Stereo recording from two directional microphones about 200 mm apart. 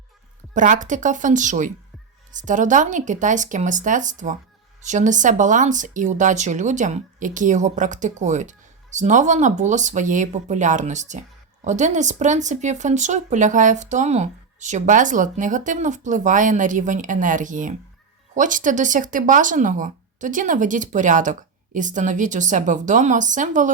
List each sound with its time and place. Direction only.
0.5 s speech: 40° right (ahead or behind)